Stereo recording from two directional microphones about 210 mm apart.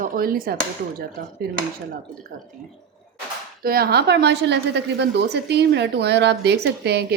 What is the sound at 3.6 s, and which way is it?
A woman's voice, 45° right (ahead or behind).